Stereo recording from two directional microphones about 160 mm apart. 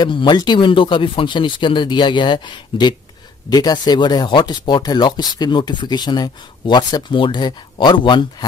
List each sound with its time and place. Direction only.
0.0 s speech: 30° left (ahead or behind)